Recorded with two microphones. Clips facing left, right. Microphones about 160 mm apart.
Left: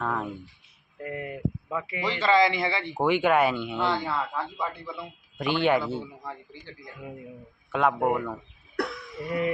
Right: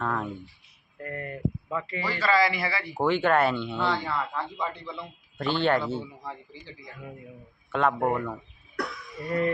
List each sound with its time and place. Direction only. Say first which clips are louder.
0.0 s a sound: even; 10° left (ahead or behind)
0.9 s a man's voice: left 1 dB; 10° left (ahead or behind)
6.0 s a man's voice: even; centre (ahead or behind)